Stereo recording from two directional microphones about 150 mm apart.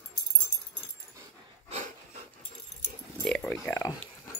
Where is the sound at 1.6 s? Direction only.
45° right (ahead or behind).